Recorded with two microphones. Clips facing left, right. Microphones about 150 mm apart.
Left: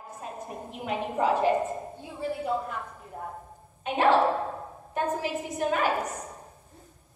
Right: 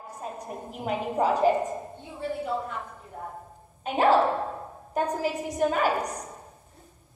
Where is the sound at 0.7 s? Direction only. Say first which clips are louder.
Right 2 dB; 40° right (ahead or behind).